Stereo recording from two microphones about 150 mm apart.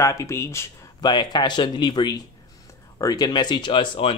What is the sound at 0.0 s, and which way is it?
Speech, 20° left (ahead or behind).